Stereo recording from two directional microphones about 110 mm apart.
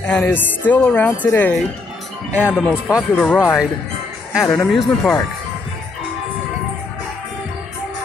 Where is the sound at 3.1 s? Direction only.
10° left (ahead or behind).